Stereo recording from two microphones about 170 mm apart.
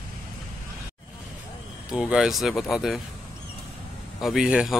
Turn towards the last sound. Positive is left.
turn(degrees=-5)  # may be behind; listen again after turning